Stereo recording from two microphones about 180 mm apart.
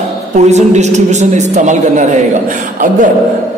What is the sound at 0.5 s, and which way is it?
A man's voice, 40° right (ahead or behind).